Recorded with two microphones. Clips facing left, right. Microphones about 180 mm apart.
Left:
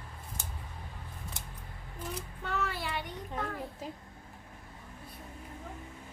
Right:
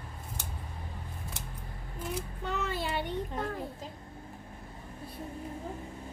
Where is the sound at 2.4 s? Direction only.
20° right (ahead or behind).